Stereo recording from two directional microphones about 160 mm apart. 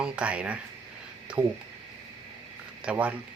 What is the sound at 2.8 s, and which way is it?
Speech, 5° right (ahead or behind).